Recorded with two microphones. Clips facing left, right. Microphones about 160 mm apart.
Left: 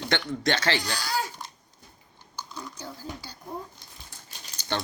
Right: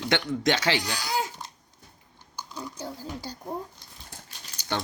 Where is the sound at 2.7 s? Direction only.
40° right (ahead or behind).